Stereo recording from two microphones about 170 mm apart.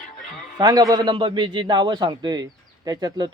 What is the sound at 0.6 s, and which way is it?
Speech, 20° right (ahead or behind).